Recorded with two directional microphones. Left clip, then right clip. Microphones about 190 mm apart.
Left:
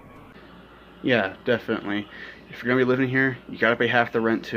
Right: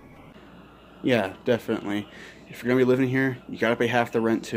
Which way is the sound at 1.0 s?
10° right (ahead or behind).